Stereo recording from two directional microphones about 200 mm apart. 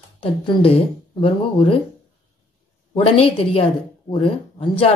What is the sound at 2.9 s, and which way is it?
A woman's voice, 30° left (ahead or behind).